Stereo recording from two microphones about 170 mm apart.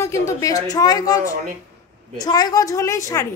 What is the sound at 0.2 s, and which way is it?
A woman's voice, 20° left (ahead or behind).